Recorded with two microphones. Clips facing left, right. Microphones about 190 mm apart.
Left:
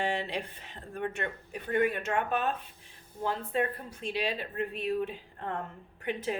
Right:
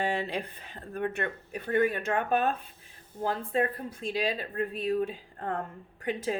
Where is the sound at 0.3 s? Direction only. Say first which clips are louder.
Right 2 dB; 55° right (ahead or behind).